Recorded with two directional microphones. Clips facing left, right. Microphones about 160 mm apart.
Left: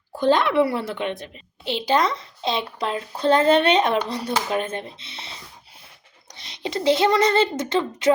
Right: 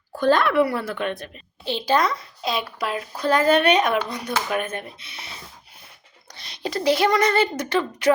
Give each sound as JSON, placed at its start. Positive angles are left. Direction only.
{"t": 0.2, "sound": "a woman's voice", "side_deg": 20}